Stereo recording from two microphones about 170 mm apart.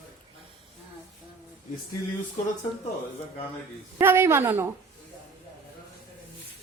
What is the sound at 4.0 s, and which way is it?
Speech, 15° right (ahead or behind).